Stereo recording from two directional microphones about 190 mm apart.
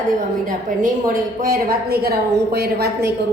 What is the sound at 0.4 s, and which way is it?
A woman's voice, 45° right (ahead or behind).